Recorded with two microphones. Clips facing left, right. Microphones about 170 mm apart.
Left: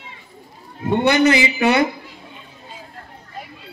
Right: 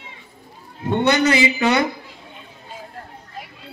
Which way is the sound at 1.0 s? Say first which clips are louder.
Left 1 dB; 20° left (ahead or behind).